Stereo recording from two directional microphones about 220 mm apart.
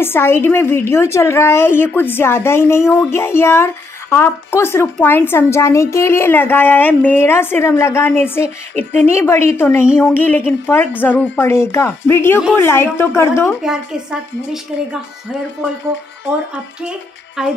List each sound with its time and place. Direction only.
0.0 s speech: 10° left (ahead or behind)
14.7 s speech: 5° right (ahead or behind)
17.4 s speech: 5° right (ahead or behind)